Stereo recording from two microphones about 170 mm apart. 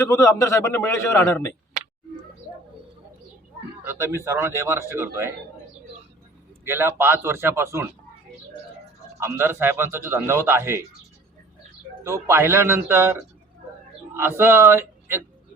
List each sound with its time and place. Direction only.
0.1 s a man's voice: 20° left (ahead or behind)
3.8 s a man's voice: 15° right (ahead or behind)
6.7 s a man's voice: 15° right (ahead or behind)
9.2 s a man's voice: 15° right (ahead or behind)
12.0 s a man's voice: 15° right (ahead or behind)